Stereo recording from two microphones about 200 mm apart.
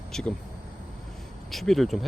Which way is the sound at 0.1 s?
5° left (ahead or behind).